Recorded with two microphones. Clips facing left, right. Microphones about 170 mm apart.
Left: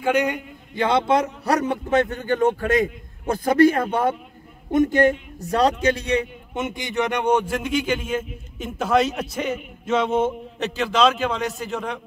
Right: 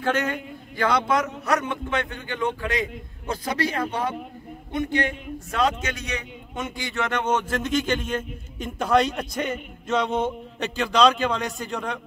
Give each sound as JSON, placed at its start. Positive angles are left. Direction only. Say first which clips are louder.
{"t": 0.0, "sound": "a man's voice", "louder": "left 4 dB", "side_deg": 15}